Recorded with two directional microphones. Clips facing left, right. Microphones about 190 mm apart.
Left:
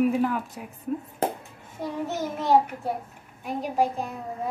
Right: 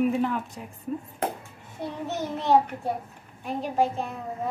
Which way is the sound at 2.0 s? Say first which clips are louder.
Right 1 dB; 10° left (ahead or behind).